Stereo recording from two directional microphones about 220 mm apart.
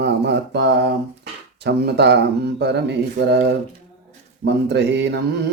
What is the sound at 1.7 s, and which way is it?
Speech, 50° right (ahead or behind).